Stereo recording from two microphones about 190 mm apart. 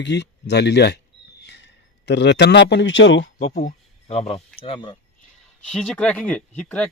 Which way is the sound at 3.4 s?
40° left (ahead or behind).